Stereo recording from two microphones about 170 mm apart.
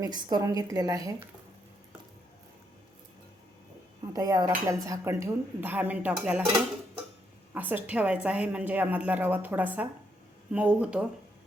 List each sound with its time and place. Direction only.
0.0 s a woman's voice: 25° right (ahead or behind)
4.0 s speech: 20° right (ahead or behind)
7.5 s speech: 10° right (ahead or behind)